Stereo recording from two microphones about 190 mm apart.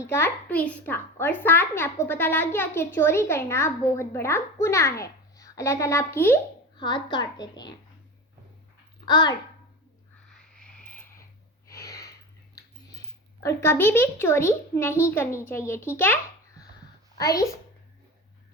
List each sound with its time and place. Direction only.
0.0 s a child's voice: 10° left (ahead or behind)
6.7 s a woman's voice: 25° left (ahead or behind)
9.0 s a child's voice: 20° left (ahead or behind)
10.2 s a sound: 5° left (ahead or behind)
11.9 s a sound: 15° left (ahead or behind)
13.4 s a child's voice: 15° left (ahead or behind)